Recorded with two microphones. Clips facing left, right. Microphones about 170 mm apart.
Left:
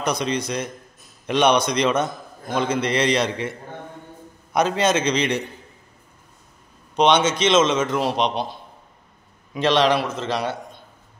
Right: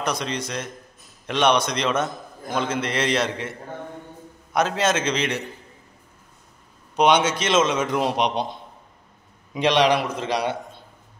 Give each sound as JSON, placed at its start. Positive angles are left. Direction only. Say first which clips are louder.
{"t": 0.0, "sound": "a man's voice", "louder": "left 3 dB", "side_deg": 0}
{"t": 7.0, "sound": "a man's voice", "louder": "left 1 dB", "side_deg": -10}